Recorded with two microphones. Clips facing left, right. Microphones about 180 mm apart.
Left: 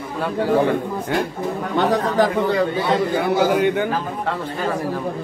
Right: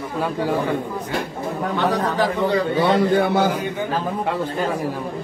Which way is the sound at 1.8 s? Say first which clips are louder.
Left 4 dB; 45° left (ahead or behind).